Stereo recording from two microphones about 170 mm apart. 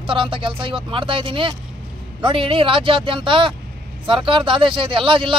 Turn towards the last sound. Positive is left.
turn(degrees=-30)  # may be behind; listen again after turning